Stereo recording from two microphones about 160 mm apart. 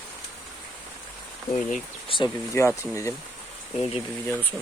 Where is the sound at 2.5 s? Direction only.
15° left (ahead or behind).